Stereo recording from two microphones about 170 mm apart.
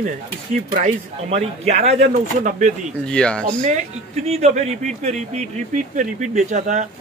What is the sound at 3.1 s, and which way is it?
Speech, 5° left (ahead or behind).